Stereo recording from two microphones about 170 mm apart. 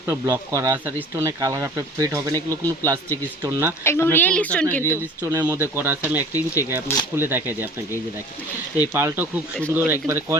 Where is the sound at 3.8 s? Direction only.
15° left (ahead or behind).